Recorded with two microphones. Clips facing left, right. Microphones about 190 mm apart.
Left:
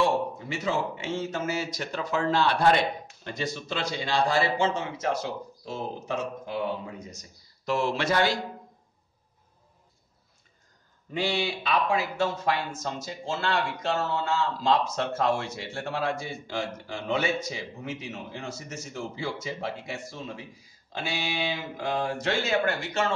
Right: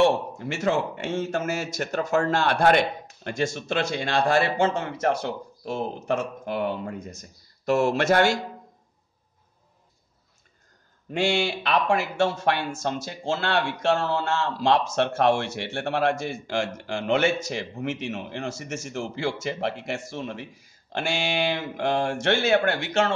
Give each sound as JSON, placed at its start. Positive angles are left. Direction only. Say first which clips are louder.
{"t": 0.0, "sound": "speech", "louder": "right 4 dB", "side_deg": -75}
{"t": 0.7, "sound": "a man's voice", "louder": "right 4 dB", "side_deg": -55}
{"t": 11.1, "sound": "speech", "louder": "right 4 dB", "side_deg": -80}